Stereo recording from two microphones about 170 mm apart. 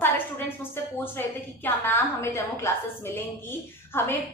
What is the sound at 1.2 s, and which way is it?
A woman's voice, 15° left (ahead or behind).